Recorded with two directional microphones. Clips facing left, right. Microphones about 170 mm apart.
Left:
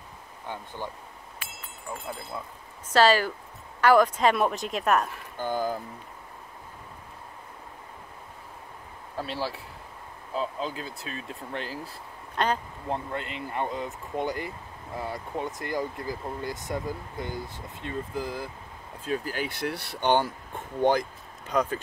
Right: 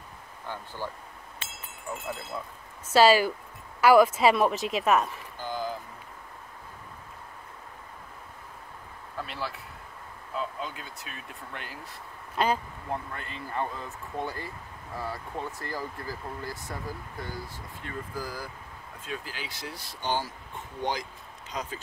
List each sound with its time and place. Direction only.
0.5 s speech: 20° left (ahead or behind)
1.4 s a sound: 25° right (ahead or behind)
2.9 s speech: 10° right (ahead or behind)
5.4 s a sound: 50° left (ahead or behind)
9.1 s speech: 30° left (ahead or behind)
12.4 s speech: 5° right (ahead or behind)
12.8 s speech: 25° left (ahead or behind)
19.0 s speech: 40° left (ahead or behind)